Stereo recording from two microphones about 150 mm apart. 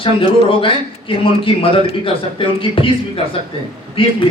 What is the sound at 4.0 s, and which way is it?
Speech, 35° left (ahead or behind).